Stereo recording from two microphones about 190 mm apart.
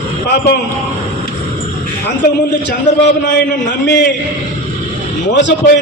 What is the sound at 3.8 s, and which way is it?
Speech, 70° left (ahead or behind).